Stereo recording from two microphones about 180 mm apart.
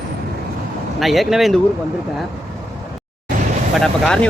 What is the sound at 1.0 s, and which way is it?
Speech, centre (ahead or behind).